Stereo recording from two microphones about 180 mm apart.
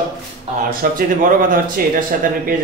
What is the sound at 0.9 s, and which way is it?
Speech, 50° right (ahead or behind).